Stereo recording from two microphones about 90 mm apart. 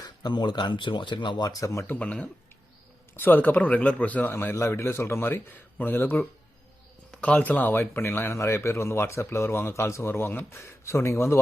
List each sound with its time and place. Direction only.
0.0 s speech: 50° left (ahead or behind)
1.5 s speech: 40° left (ahead or behind)
1.9 s speech: 15° left (ahead or behind); by 11.3 s 30° left (ahead or behind)